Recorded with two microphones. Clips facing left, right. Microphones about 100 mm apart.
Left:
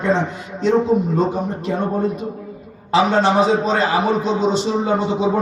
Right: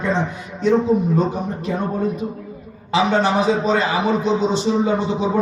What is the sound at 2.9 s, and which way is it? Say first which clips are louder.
A man's voice: left 2 dB; 35° left (ahead or behind).